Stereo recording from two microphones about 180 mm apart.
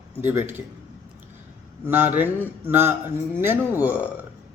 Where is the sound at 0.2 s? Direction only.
10° right (ahead or behind).